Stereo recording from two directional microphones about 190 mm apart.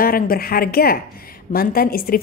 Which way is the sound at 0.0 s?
50° left (ahead or behind).